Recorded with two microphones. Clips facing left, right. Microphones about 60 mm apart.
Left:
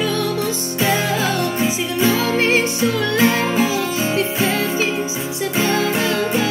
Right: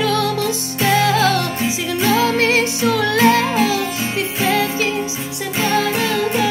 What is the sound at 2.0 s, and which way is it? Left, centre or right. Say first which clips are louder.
Music: right 2 dB; right.